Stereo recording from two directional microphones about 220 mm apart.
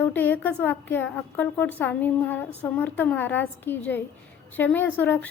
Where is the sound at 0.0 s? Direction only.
10° left (ahead or behind).